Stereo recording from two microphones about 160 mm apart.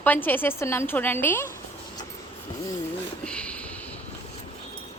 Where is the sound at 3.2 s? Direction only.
5° left (ahead or behind).